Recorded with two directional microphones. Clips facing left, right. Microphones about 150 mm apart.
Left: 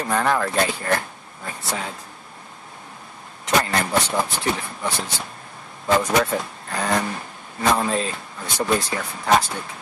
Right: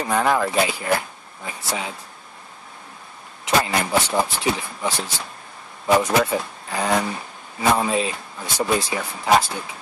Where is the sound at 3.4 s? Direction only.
5° right (ahead or behind).